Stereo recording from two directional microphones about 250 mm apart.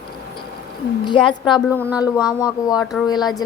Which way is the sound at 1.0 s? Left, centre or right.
Centre.